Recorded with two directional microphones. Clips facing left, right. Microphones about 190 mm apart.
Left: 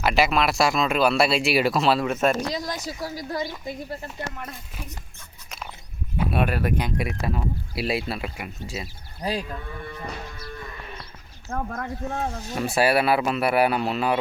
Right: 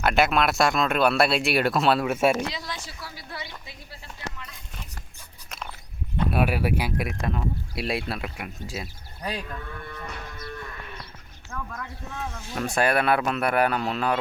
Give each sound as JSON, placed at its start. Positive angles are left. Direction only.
{"t": 0.0, "sound": "speech", "side_deg": 0}
{"t": 2.5, "sound": "speech", "side_deg": 40}
{"t": 6.1, "sound": "speech", "side_deg": -5}
{"t": 9.2, "sound": "speech", "side_deg": 30}
{"t": 11.4, "sound": "speech", "side_deg": 45}
{"t": 12.5, "sound": "speech", "side_deg": 5}